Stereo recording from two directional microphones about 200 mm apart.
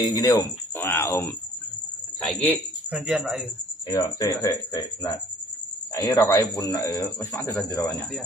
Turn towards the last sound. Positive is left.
turn(degrees=15)  # may be behind; listen again after turning